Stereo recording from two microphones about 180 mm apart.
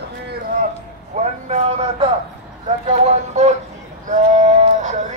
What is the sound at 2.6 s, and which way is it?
Speech, 35° right (ahead or behind).